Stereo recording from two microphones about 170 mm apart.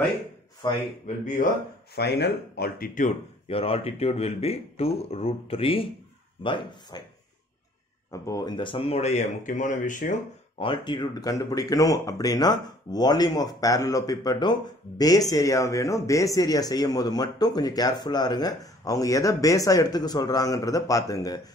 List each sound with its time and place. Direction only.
0.6 s speech: 25° left (ahead or behind)
1.0 s speech: 50° left (ahead or behind)
2.0 s speech: 75° left (ahead or behind); by 3.2 s 50° left (ahead or behind)
3.4 s speech: 35° left (ahead or behind)
8.1 s speech: 20° left (ahead or behind); by 10.1 s 50° left (ahead or behind)
10.6 s speech: 30° left (ahead or behind)